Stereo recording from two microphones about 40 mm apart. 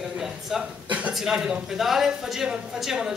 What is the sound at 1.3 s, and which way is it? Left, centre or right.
Speech, right.